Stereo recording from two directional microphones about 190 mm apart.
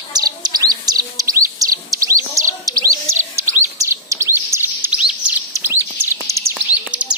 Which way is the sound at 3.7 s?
15° right (ahead or behind).